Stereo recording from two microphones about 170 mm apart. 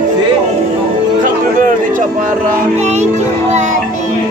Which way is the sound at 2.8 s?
40° right (ahead or behind).